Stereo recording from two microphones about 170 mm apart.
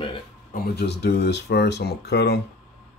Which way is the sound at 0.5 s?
70° left (ahead or behind).